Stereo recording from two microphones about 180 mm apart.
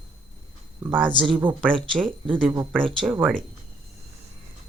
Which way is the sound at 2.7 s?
Centre (ahead or behind).